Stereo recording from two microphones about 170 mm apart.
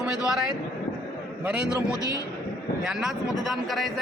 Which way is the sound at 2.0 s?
20° left (ahead or behind).